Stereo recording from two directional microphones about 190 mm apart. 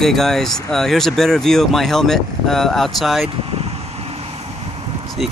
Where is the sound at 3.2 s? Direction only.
30° right (ahead or behind).